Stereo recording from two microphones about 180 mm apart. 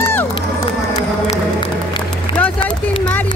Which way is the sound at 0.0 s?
10° left (ahead or behind).